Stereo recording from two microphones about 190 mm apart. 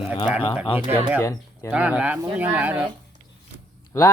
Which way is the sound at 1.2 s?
15° left (ahead or behind).